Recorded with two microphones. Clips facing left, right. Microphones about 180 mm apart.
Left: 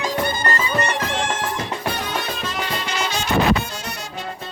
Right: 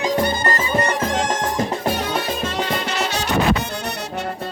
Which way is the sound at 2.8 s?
70° right (ahead or behind).